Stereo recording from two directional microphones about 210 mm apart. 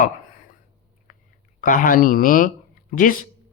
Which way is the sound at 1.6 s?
40° left (ahead or behind).